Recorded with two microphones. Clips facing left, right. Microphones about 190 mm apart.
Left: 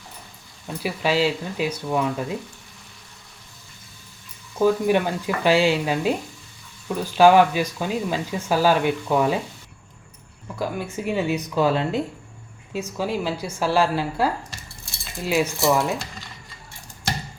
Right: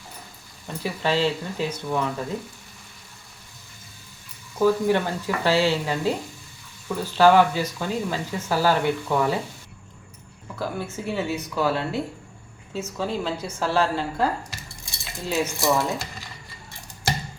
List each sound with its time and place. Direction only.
0.8 s speech: 10° left (ahead or behind)
4.5 s speech: 15° left (ahead or behind)
10.6 s speech: 15° left (ahead or behind)